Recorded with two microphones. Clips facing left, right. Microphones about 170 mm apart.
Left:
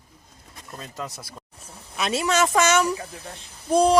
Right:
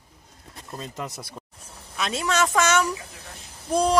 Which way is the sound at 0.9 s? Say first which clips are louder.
Right 1 dB; 15° right (ahead or behind).